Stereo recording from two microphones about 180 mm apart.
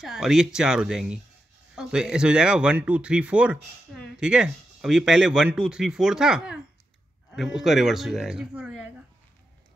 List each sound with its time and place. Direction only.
0.0 s speech: centre (ahead or behind)